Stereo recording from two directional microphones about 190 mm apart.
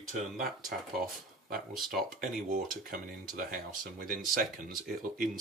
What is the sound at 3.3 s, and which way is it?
Speech, 50° right (ahead or behind).